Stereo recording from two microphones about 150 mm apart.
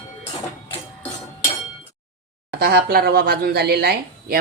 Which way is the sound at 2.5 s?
85° right.